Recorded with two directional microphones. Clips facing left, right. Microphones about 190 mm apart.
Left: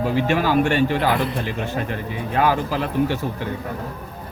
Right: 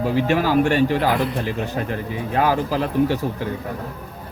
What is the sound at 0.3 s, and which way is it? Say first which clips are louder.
Speech: right 1 dB; 35° right (ahead or behind).